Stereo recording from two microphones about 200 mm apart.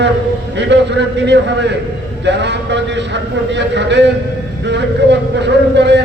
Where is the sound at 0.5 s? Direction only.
60° right (ahead or behind).